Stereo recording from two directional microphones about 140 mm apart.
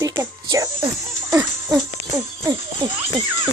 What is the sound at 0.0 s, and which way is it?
Music, 25° right (ahead or behind).